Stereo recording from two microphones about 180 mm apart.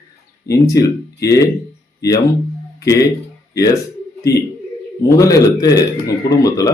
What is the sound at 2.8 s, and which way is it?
Speech, 20° left (ahead or behind).